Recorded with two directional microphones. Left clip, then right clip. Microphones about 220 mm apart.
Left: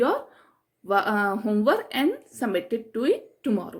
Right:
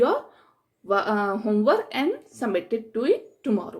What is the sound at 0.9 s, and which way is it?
A woman's voice, 45° left (ahead or behind).